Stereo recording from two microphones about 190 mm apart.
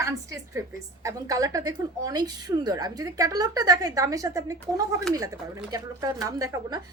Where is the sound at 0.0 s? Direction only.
15° right (ahead or behind).